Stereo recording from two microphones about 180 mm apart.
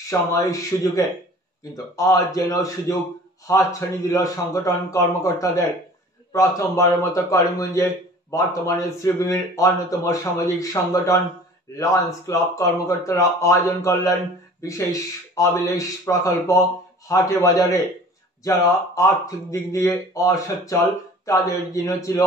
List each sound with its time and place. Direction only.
0.1 s a man's voice: 20° left (ahead or behind)